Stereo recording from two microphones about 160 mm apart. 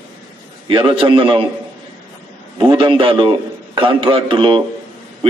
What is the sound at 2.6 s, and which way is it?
A man's voice, 30° right (ahead or behind).